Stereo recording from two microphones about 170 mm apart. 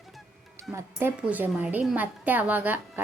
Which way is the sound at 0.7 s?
15° right (ahead or behind).